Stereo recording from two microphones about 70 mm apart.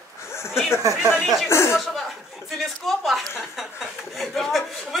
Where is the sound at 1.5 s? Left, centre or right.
Left.